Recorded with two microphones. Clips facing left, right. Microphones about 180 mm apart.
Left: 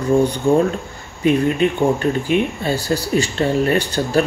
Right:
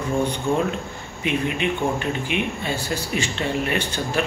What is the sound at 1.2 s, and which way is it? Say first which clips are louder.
Speech: left 8 dB; 40° left (ahead or behind).